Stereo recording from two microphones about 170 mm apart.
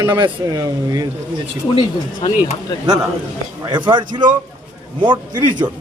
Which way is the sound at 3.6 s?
25° right (ahead or behind).